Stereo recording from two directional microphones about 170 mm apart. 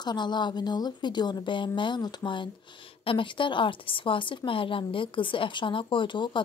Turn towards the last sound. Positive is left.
turn(degrees=30)  # may be behind; listen again after turning